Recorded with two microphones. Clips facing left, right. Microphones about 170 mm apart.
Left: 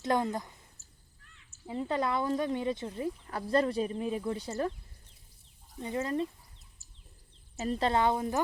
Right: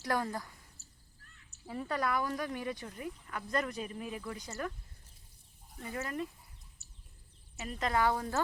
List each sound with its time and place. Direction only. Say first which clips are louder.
0.0 s speech: left 5 dB; 20° left (ahead or behind)
0.8 s a sound: right 1 dB; 70° right (ahead or behind)
1.6 s speech: left 4 dB; 20° left (ahead or behind)
5.8 s speech: left 6 dB; 25° left (ahead or behind)
6.8 s bird: even; 70° right (ahead or behind)
7.5 s speech: left 5 dB; 35° left (ahead or behind)